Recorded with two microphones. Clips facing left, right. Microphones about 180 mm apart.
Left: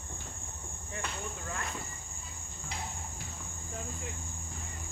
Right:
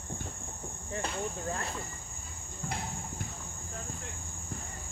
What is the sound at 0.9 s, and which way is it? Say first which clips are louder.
Cricket: right 5 dB; 35° right (ahead or behind).